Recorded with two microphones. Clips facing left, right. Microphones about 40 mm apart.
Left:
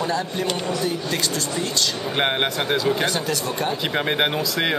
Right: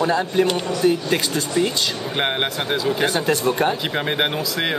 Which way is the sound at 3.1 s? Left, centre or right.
Right.